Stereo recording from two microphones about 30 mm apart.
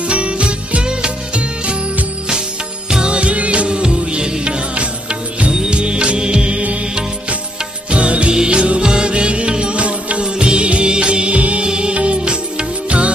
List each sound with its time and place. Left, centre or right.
0.1 s music: right
3.0 s music: right
3.7 s music: right
5.5 s music: right
7.9 s music: right
11.6 s music: right